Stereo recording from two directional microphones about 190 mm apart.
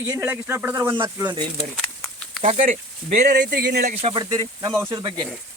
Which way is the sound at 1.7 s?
5° left (ahead or behind).